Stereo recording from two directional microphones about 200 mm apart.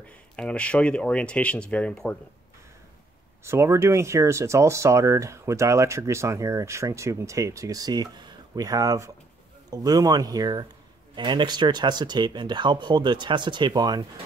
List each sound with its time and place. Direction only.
0.0 s speech: 5° left (ahead or behind)
3.4 s speech: 15° right (ahead or behind)